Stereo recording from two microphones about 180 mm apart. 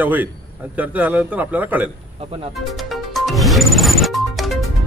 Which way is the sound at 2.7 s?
Centre (ahead or behind).